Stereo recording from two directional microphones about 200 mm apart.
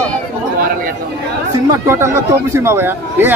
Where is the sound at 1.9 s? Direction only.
15° right (ahead or behind).